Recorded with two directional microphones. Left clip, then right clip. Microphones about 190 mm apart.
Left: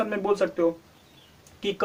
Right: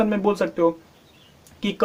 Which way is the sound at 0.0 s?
40° right (ahead or behind).